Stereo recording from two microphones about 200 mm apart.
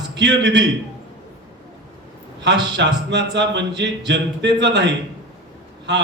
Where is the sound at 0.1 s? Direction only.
60° right (ahead or behind).